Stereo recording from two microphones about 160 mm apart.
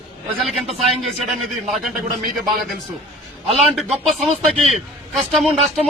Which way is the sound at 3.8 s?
Centre (ahead or behind).